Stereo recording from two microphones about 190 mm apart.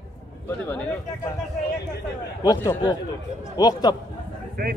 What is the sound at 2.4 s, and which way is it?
Speech, 20° left (ahead or behind).